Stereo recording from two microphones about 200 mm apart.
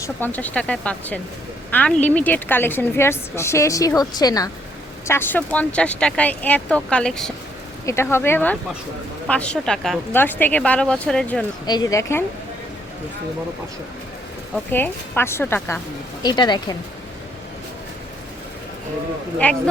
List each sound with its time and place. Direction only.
0.0 s a woman's voice: 10° left (ahead or behind)
11.6 s a woman's voice: 20° left (ahead or behind)
14.7 s a woman's voice: 10° left (ahead or behind)
16.2 s speech: 20° left (ahead or behind)
19.4 s a woman's voice: 5° left (ahead or behind)